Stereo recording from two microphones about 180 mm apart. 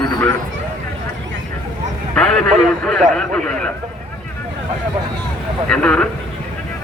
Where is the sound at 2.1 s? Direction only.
5° left (ahead or behind).